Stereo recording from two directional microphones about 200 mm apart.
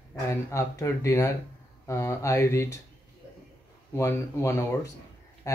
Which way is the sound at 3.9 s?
15° left (ahead or behind).